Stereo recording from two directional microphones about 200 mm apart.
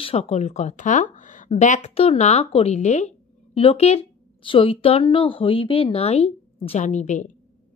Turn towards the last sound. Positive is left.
turn(degrees=35)  # may be behind; listen again after turning